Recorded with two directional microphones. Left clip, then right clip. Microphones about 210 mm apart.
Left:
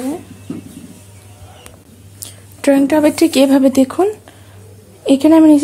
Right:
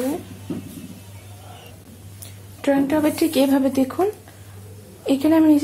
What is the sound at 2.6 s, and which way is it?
Speech, 50° left (ahead or behind).